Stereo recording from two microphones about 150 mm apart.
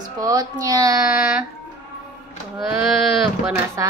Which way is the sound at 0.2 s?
25° right (ahead or behind).